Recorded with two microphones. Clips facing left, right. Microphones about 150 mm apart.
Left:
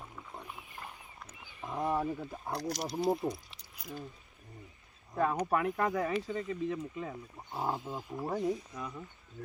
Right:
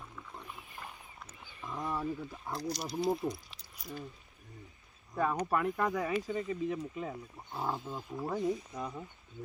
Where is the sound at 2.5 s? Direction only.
85° left.